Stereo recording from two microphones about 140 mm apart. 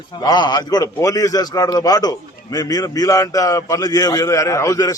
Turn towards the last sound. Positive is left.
turn(degrees=25)  # may be behind; listen again after turning